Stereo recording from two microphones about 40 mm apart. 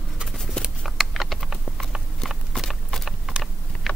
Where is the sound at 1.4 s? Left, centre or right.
Centre.